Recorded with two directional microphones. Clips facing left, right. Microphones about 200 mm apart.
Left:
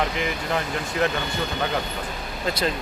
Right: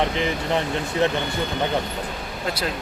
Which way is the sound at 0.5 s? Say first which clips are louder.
Right 3 dB; 25° right (ahead or behind).